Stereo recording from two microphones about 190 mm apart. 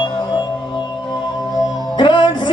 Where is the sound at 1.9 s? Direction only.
25° left (ahead or behind).